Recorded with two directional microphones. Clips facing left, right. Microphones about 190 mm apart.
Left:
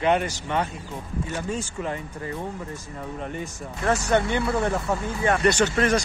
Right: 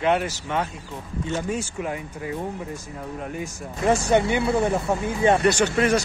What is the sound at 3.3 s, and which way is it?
Speech, 10° right (ahead or behind).